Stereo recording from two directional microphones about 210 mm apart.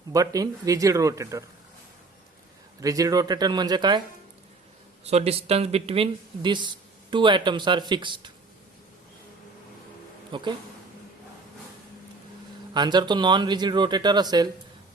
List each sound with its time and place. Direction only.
0.1 s a man's voice: 15° right (ahead or behind)
2.8 s speech: 15° right (ahead or behind)
5.0 s speech: 30° right (ahead or behind)
10.3 s speech: 25° right (ahead or behind)
12.7 s speech: 20° right (ahead or behind)